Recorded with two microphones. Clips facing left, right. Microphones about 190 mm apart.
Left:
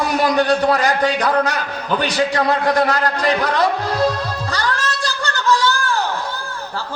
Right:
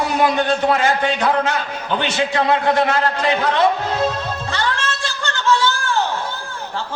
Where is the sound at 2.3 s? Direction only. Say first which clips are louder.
Right 2 dB; 40° left (ahead or behind).